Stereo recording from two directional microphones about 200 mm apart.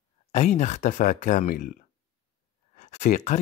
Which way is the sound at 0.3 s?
35° left (ahead or behind).